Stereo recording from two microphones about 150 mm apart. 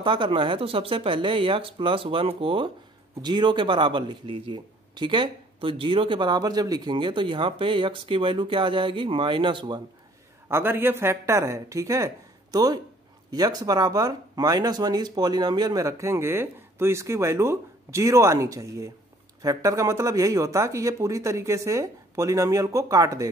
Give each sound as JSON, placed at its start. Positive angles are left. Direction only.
{"t": 0.0, "sound": "speech", "side_deg": -35}
{"t": 10.5, "sound": "speech", "side_deg": -15}